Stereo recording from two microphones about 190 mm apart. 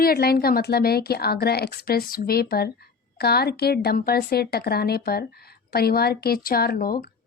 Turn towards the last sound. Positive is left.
turn(degrees=50)  # may be behind; listen again after turning